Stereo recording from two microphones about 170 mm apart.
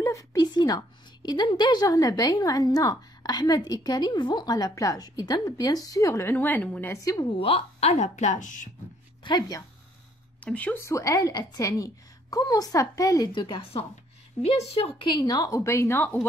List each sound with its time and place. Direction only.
0.0 s a woman's voice: 20° left (ahead or behind)
7.3 s a woman's voice: 35° left (ahead or behind)
9.2 s a woman's voice: 25° left (ahead or behind)
10.4 s a woman's voice: 10° left (ahead or behind)